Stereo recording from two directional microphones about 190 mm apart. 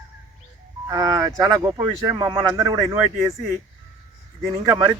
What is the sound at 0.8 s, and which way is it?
Speech, 20° right (ahead or behind).